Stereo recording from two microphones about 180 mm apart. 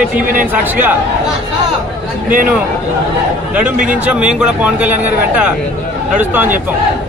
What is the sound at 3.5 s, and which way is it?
Speech, 10° right (ahead or behind).